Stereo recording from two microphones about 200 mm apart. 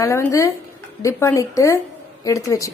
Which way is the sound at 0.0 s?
15° left (ahead or behind).